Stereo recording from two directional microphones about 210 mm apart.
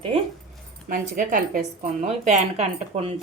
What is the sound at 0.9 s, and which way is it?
A woman's voice, 40° right (ahead or behind).